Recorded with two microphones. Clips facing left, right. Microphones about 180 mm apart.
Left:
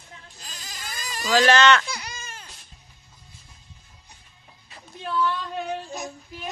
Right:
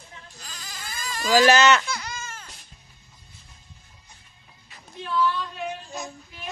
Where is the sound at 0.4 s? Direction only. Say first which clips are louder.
Even; 15° left (ahead or behind).